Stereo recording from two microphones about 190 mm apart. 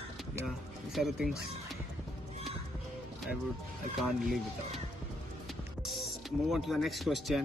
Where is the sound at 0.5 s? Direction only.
Centre (ahead or behind).